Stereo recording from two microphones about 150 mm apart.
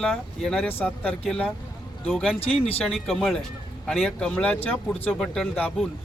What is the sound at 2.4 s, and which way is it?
Speech, 40° left (ahead or behind).